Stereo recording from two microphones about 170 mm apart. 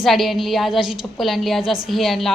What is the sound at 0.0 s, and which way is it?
A woman's voice, centre (ahead or behind).